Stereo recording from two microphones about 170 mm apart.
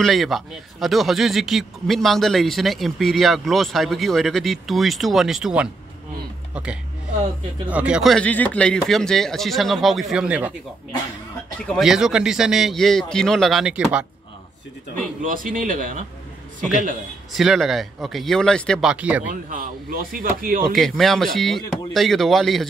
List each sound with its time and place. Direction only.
0.0 s a man's voice: centre (ahead or behind)
11.7 s a man's voice: centre (ahead or behind)
15.0 s speech: 50° right (ahead or behind)
17.3 s a man's voice: centre (ahead or behind)
19.5 s speech: 55° right (ahead or behind)
20.7 s a man's voice: centre (ahead or behind)